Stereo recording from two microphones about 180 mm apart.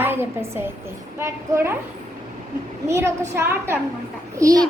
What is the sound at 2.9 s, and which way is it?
A woman's voice, 15° right (ahead or behind).